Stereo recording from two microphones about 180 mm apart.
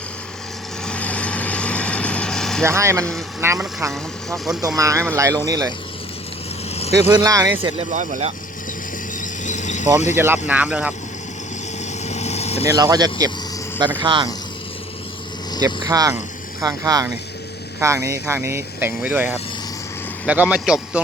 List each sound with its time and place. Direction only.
0.9 s vehicle: 5° left (ahead or behind)
2.6 s speech: 15° right (ahead or behind)
7.1 s speech: 20° right (ahead or behind)
7.9 s speech: 45° right (ahead or behind)
9.2 s vehicle: 45° left (ahead or behind)
10.2 s speech: 10° right (ahead or behind)
12.0 s vehicle: 40° left (ahead or behind)
12.6 s speech: 20° right (ahead or behind)
15.6 s speech: 20° right (ahead or behind); by 21.0 s 5° right (ahead or behind)